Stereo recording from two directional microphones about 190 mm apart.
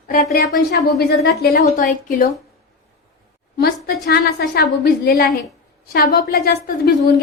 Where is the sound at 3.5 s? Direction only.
55° left (ahead or behind).